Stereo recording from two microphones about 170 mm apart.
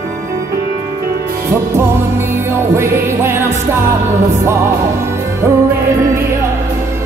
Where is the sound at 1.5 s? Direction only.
15° right (ahead or behind).